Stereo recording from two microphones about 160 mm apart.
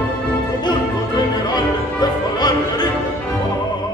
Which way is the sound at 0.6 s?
25° left (ahead or behind).